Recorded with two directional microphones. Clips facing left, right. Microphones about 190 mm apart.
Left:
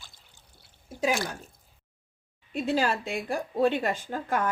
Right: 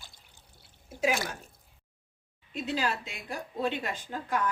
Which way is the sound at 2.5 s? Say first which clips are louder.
Left 5 dB; 50° left (ahead or behind).